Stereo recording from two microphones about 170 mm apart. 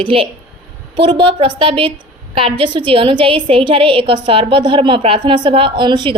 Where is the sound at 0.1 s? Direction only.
30° right (ahead or behind).